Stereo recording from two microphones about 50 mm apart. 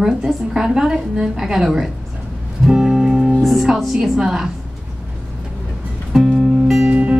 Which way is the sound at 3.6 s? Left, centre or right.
Centre.